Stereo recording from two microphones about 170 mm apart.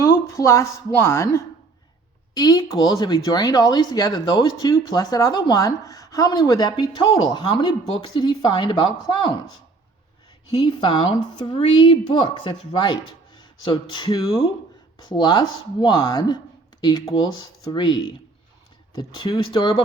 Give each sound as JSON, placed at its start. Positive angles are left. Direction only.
{"t": 0.0, "sound": "speech", "side_deg": 15}
{"t": 10.7, "sound": "a woman's voice", "side_deg": 30}
{"t": 19.1, "sound": "speech", "side_deg": 30}